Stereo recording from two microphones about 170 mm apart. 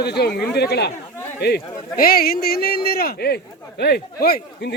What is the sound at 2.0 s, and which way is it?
Speech, 60° left (ahead or behind).